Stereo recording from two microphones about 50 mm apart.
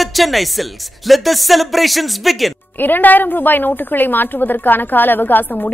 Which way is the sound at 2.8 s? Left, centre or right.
Left.